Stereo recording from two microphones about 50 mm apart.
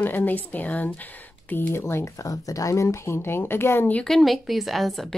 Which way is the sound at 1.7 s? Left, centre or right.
Left.